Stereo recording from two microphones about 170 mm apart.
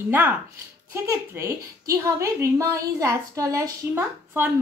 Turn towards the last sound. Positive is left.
turn(degrees=-10)  # may be behind; listen again after turning